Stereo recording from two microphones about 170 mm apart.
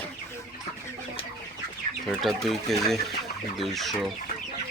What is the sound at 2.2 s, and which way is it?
Speech, centre (ahead or behind).